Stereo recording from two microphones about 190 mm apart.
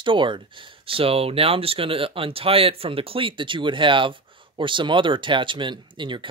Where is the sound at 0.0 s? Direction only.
25° right (ahead or behind).